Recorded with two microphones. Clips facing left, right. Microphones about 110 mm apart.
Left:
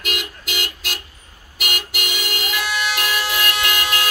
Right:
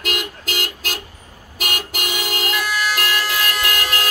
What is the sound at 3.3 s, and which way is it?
Vehicle, 35° right (ahead or behind).